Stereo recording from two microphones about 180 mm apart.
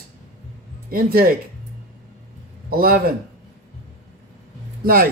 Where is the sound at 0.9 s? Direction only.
55° right (ahead or behind).